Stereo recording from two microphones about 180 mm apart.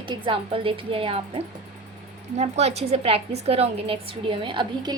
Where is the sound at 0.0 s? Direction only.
30° right (ahead or behind).